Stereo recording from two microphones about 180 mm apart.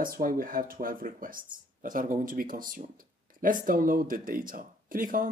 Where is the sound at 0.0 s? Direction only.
50° right (ahead or behind).